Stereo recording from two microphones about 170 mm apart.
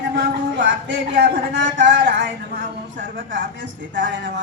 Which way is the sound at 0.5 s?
85° right.